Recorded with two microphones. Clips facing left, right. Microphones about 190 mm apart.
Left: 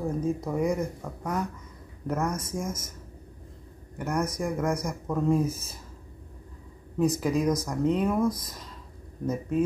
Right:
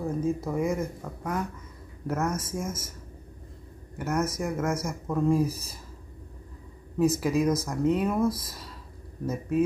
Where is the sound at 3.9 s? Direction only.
5° right (ahead or behind).